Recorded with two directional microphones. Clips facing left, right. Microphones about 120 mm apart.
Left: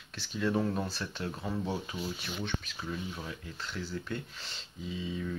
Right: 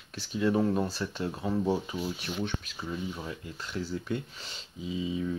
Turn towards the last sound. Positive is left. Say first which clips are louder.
# right 5 dB
turn(degrees=-5)  # may be behind; listen again after turning